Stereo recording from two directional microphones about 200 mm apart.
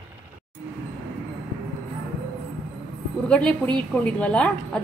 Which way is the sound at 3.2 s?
5° left (ahead or behind).